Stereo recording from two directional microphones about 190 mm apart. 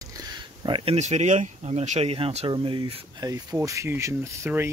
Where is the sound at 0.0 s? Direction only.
20° right (ahead or behind).